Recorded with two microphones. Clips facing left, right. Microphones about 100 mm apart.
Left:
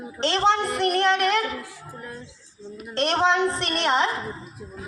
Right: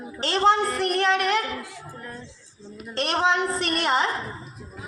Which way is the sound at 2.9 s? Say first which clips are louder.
Left 2 dB; centre (ahead or behind).